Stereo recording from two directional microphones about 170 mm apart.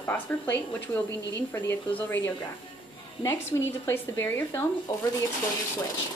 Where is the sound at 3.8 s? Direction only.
15° left (ahead or behind).